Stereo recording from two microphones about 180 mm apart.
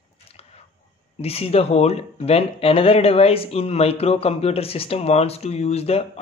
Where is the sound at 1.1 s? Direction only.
35° left (ahead or behind).